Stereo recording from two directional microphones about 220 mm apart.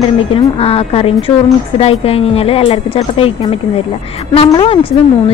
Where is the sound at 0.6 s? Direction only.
25° left (ahead or behind).